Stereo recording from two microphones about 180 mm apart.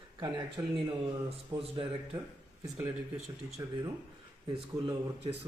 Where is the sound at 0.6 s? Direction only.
15° right (ahead or behind).